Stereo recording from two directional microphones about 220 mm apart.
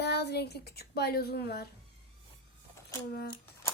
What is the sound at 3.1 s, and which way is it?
Speech, 45° left (ahead or behind).